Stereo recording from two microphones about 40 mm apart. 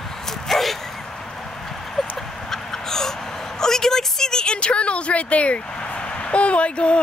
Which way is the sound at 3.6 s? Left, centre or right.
Centre.